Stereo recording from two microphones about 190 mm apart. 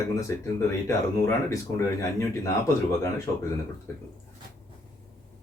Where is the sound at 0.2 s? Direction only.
15° left (ahead or behind).